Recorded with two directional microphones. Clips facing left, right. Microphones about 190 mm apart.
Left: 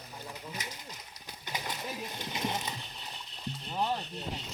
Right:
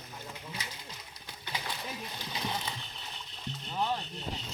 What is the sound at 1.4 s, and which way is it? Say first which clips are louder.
Bird: left 1 dB; 45° left (ahead or behind).